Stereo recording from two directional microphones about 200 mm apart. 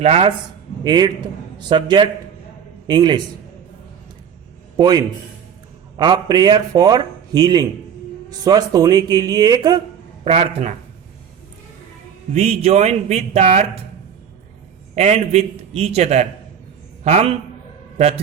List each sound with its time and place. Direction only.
0.0 s speech: 30° right (ahead or behind)
4.8 s speech: 20° right (ahead or behind)
10.2 s speech: 30° right (ahead or behind)
12.3 s speech: 30° right (ahead or behind)
14.9 s a man's voice: 35° right (ahead or behind)